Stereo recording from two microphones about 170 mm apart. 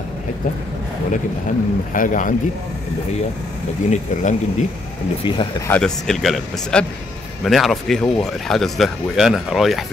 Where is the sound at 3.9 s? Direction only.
45° left (ahead or behind).